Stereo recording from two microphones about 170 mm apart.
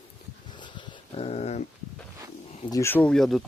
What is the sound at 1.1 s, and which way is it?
Dog, 40° left (ahead or behind).